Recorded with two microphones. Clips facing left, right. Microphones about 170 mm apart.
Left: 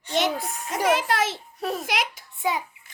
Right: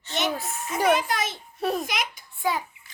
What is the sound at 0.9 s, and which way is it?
Speech, 90° left.